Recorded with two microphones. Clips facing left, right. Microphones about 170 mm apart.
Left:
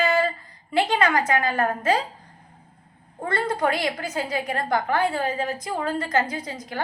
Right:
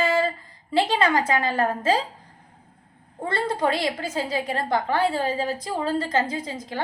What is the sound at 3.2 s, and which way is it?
A woman's voice, 30° right (ahead or behind).